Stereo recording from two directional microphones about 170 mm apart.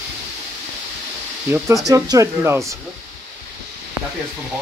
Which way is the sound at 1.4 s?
15° right (ahead or behind).